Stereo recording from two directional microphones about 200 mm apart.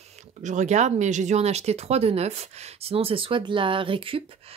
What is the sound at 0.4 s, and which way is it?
Speech, 35° right (ahead or behind).